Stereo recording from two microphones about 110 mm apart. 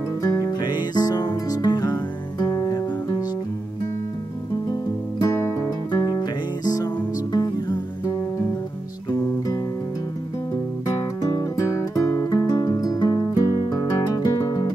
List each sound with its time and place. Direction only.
0.2 s music: 30° left (ahead or behind)
5.2 s music: 30° left (ahead or behind)
11.0 s music: 35° left (ahead or behind)